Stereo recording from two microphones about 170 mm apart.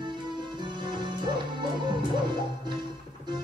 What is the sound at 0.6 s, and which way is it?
Music, 25° right (ahead or behind).